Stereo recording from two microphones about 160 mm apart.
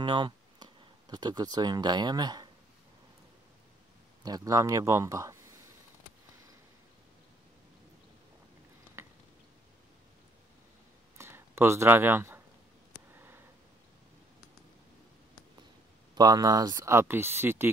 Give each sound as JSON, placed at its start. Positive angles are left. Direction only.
{"t": 0.0, "sound": "speech", "side_deg": -30}
{"t": 4.2, "sound": "speech", "side_deg": -25}
{"t": 11.1, "sound": "a sound", "side_deg": -15}
{"t": 16.2, "sound": "speech", "side_deg": -25}